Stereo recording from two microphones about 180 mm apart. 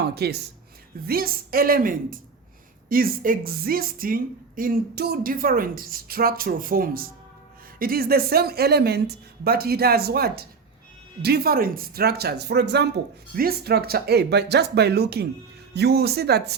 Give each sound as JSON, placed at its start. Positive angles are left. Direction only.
{"t": 0.1, "sound": "a woman's voice", "side_deg": -60}